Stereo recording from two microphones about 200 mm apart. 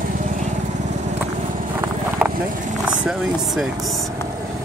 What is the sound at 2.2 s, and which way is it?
Vehicle, 5° right (ahead or behind).